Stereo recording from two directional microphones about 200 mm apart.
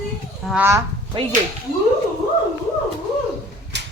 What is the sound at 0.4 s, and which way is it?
Speech, 10° right (ahead or behind).